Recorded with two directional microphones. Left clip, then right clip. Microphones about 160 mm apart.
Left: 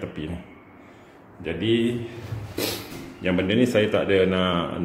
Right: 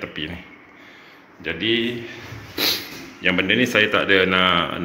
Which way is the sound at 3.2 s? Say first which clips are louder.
Right 4 dB; 10° left (ahead or behind).